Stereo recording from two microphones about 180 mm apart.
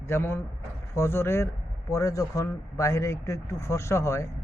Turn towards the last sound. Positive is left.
turn(degrees=15)  # may be behind; listen again after turning